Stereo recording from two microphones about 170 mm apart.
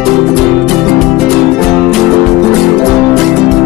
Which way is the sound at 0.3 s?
Centre (ahead or behind).